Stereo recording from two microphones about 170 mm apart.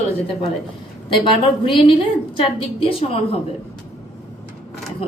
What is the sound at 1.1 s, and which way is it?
A woman's voice, 30° left (ahead or behind).